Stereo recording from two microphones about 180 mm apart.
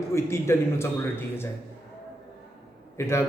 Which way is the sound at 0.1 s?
15° left (ahead or behind).